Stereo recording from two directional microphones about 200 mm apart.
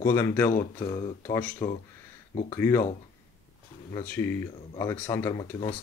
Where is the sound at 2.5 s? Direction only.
15° left (ahead or behind).